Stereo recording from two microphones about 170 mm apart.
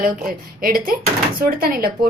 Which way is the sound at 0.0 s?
55° right (ahead or behind).